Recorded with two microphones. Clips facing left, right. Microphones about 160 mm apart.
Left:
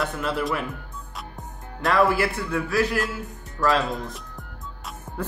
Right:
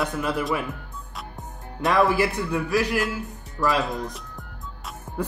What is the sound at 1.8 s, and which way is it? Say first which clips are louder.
Speech: even; 15° right (ahead or behind).